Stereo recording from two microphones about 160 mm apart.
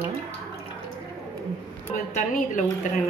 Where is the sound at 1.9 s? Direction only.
50° left (ahead or behind).